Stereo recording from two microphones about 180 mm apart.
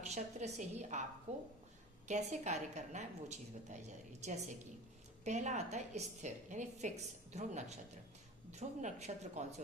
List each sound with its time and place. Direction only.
0.1 s a woman's voice: 40° right (ahead or behind)